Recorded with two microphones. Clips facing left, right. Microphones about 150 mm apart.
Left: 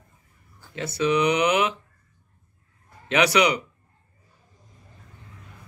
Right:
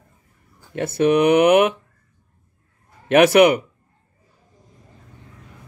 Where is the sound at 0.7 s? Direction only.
55° right (ahead or behind).